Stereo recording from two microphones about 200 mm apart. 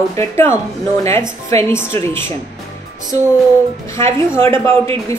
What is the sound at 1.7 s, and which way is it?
Speech, 10° left (ahead or behind).